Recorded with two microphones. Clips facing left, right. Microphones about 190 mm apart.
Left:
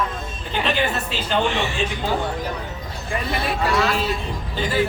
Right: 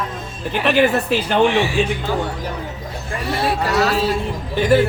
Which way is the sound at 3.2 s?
75° right (ahead or behind).